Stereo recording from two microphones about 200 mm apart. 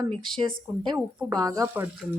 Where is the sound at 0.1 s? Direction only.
25° right (ahead or behind).